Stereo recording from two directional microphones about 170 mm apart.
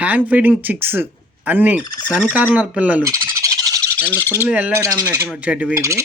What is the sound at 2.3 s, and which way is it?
Speech, 10° right (ahead or behind).